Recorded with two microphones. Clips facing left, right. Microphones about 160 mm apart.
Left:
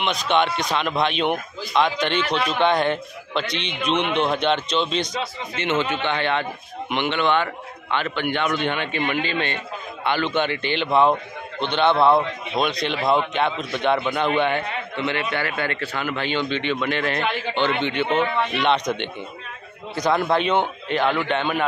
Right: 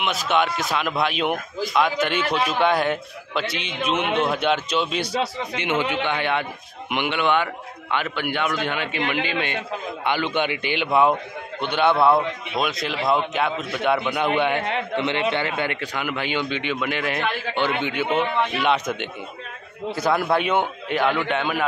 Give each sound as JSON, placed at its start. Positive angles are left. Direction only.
{"t": 0.0, "sound": "a man's voice", "side_deg": -5}